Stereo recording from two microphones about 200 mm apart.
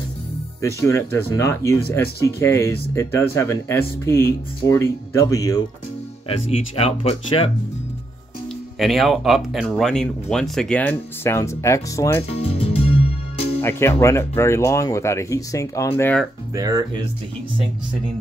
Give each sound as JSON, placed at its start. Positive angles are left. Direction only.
{"t": 0.6, "sound": "speech", "side_deg": 15}
{"t": 6.2, "sound": "speech", "side_deg": 30}
{"t": 8.7, "sound": "speech", "side_deg": 0}
{"t": 12.3, "sound": "music", "side_deg": 30}
{"t": 13.6, "sound": "speech", "side_deg": 10}
{"t": 16.5, "sound": "speech", "side_deg": -20}